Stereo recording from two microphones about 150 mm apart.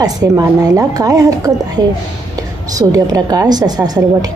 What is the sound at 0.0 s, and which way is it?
Speech, 25° right (ahead or behind).